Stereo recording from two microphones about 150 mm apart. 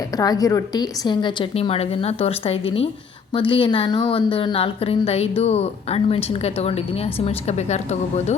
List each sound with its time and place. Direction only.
0.2 s a woman's voice: 25° left (ahead or behind); by 8.4 s 50° left (ahead or behind)